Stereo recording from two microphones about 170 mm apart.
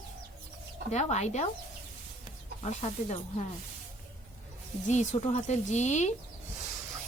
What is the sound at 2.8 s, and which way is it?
Speech, 40° left (ahead or behind).